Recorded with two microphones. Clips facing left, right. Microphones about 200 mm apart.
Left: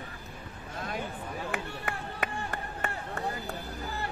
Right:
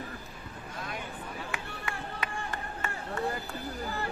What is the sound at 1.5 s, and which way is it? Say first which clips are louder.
Chop: left 3 dB; 60° left (ahead or behind).